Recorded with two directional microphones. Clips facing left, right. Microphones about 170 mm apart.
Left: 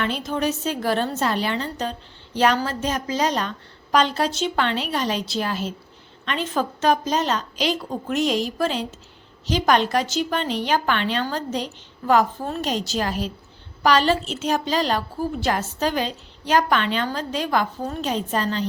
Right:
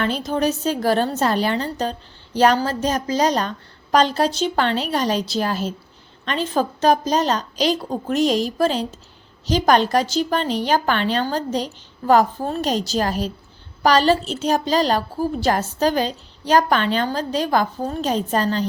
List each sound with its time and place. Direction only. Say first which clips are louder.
0.0 s a woman's voice: right 3 dB; 35° right (ahead or behind)